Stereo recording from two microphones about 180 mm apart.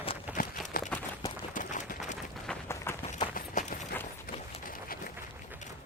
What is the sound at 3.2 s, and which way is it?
Run, 45° left (ahead or behind).